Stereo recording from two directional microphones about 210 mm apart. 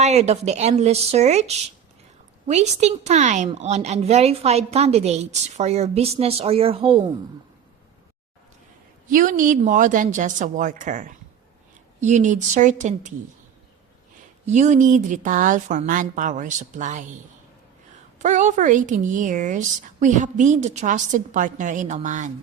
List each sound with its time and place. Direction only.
0.0 s a woman's voice: 30° right (ahead or behind)
9.0 s a woman's voice: 40° right (ahead or behind)
14.4 s a woman's voice: 35° right (ahead or behind)
18.2 s a woman's voice: 35° right (ahead or behind)